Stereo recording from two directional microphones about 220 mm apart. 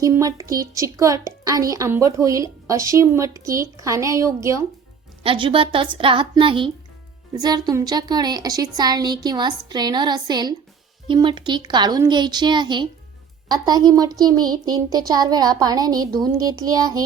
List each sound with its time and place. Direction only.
0.0 s a woman's voice: 15° right (ahead or behind)
5.2 s a woman's voice: 25° right (ahead or behind)